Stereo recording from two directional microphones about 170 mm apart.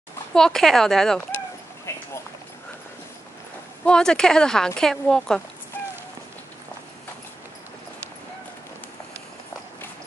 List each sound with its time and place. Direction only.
0.3 s speech: 5° left (ahead or behind)
1.9 s a sound: 15° left (ahead or behind)
3.8 s speech: 5° left (ahead or behind)